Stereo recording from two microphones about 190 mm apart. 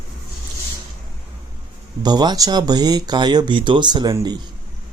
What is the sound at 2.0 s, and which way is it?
Speech, 20° right (ahead or behind).